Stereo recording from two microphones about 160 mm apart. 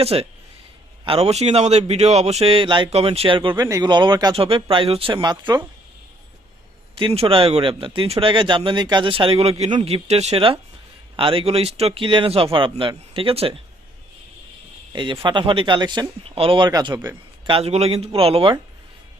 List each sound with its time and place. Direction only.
0.0 s a man's voice: 40° right (ahead or behind)
6.9 s a man's voice: 35° right (ahead or behind)
14.9 s a man's voice: 30° right (ahead or behind)